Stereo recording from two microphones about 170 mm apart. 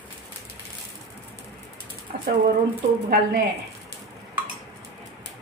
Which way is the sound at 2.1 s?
60° right (ahead or behind).